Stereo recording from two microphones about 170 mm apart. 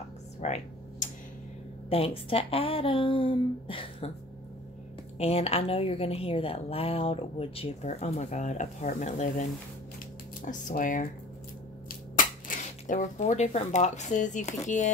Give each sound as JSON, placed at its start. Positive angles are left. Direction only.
{"t": 0.4, "sound": "a sound", "side_deg": 45}
{"t": 1.9, "sound": "a woman's voice", "side_deg": 35}
{"t": 5.1, "sound": "a woman's voice", "side_deg": 40}